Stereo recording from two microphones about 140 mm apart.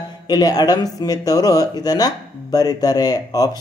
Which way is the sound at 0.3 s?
30° left (ahead or behind).